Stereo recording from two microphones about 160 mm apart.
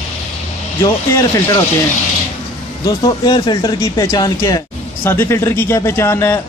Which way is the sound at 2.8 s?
25° left (ahead or behind).